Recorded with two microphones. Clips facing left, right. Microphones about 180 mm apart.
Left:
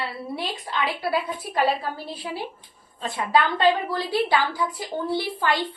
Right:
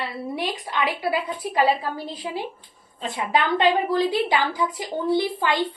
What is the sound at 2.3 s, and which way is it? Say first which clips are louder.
A woman's voice: right 1 dB; 20° right (ahead or behind).